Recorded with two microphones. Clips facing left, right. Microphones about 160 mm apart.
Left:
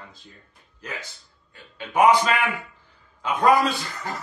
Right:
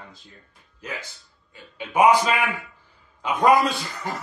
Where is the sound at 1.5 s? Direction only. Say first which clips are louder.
Even; 15° right (ahead or behind).